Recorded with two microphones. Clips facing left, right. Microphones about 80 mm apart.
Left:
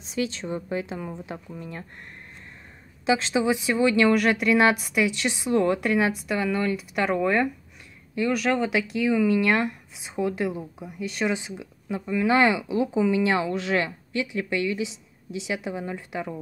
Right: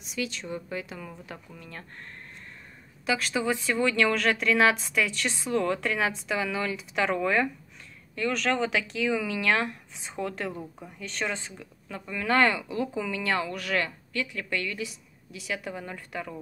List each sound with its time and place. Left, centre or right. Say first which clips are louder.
0.0 s speech: left 5 dB; left
3.1 s speech: left 5 dB; left